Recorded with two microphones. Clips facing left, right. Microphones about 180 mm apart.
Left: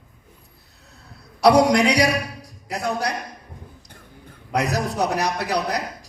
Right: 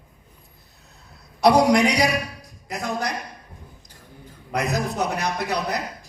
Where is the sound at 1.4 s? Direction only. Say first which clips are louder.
Left 1 dB; 70° left (ahead or behind).